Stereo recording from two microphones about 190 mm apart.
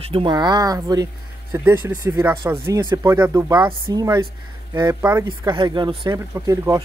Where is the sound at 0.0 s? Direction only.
30° right (ahead or behind).